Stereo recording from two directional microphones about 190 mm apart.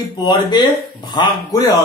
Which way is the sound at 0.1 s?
20° left (ahead or behind).